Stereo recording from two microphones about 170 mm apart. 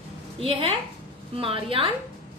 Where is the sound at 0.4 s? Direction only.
35° right (ahead or behind).